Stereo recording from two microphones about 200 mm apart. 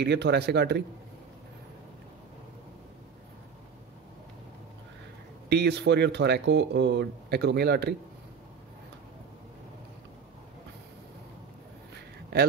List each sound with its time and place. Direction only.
0.0 s speech: 55° right (ahead or behind)
5.5 s speech: 55° right (ahead or behind)